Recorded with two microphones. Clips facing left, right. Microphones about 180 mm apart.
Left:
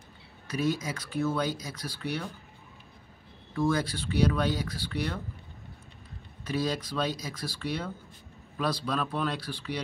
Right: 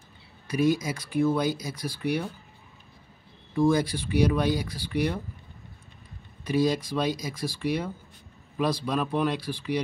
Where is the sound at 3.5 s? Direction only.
10° right (ahead or behind).